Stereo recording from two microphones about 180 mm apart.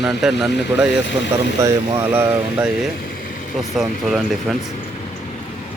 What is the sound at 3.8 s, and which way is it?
Speech, centre (ahead or behind).